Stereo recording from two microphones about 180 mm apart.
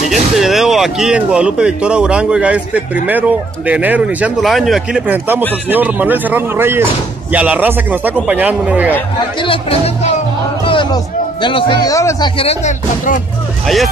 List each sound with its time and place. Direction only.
0.4 s speech: centre (ahead or behind)
9.4 s speech: 30° left (ahead or behind)
10.6 s music: 30° left (ahead or behind)
11.4 s speech: 25° left (ahead or behind)
12.4 s speech: 35° left (ahead or behind)